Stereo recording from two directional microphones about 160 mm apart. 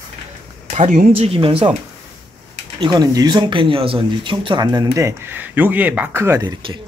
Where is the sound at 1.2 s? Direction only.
35° right (ahead or behind).